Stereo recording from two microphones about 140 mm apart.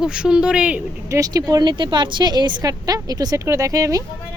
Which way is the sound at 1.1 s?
25° right (ahead or behind).